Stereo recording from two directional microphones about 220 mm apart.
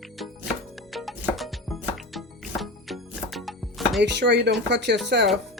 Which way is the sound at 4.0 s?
50° right (ahead or behind).